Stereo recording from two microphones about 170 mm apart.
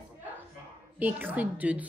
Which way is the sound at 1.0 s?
10° right (ahead or behind).